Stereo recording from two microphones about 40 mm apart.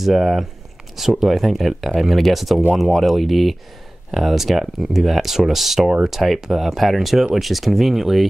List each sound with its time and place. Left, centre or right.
0.0 s speech: centre